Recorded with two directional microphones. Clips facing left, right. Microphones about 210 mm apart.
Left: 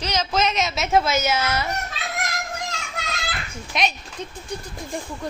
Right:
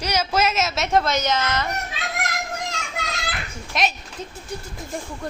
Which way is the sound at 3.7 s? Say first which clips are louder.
Even; centre (ahead or behind).